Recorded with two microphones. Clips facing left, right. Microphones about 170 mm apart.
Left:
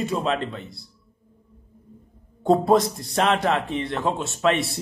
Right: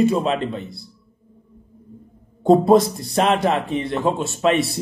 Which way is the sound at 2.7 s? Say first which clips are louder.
Right 4 dB; 5° right (ahead or behind).